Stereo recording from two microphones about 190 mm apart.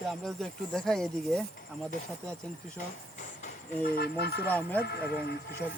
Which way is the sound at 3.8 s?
55° left (ahead or behind).